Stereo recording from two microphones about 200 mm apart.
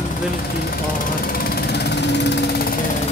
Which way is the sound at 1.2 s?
45° left (ahead or behind).